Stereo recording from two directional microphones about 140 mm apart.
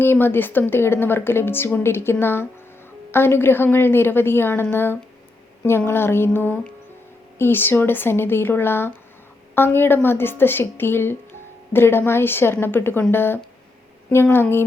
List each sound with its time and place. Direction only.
0.0 s a woman's voice: 15° left (ahead or behind)